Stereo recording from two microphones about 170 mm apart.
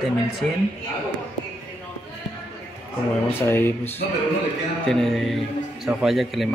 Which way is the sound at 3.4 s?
15° left (ahead or behind).